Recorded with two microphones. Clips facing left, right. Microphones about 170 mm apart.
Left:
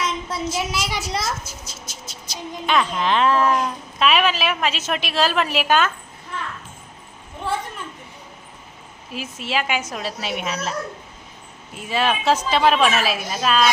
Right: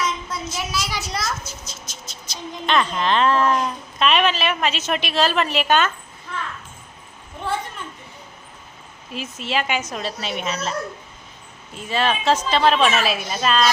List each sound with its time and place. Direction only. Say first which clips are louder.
0.0 s a child's voice: left 1 dB; 30° left (ahead or behind)
1.6 s a child's voice: left 1 dB; 5° left (ahead or behind)
9.1 s a child's voice: even; 5° left (ahead or behind)